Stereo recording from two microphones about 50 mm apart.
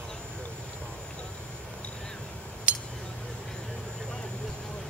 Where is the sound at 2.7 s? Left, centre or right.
Right.